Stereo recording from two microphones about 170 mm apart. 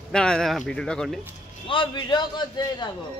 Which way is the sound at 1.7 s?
25° left (ahead or behind).